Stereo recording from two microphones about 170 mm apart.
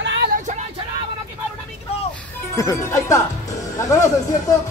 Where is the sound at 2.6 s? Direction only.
20° left (ahead or behind).